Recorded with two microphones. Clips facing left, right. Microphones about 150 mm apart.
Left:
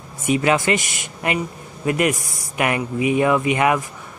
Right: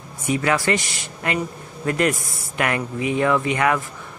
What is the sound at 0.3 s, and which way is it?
Speech, 20° left (ahead or behind).